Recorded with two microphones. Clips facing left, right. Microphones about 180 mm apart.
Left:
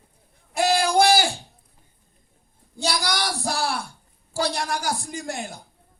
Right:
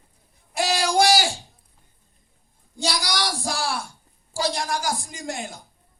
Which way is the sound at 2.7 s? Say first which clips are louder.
Left 1 dB; 55° left (ahead or behind).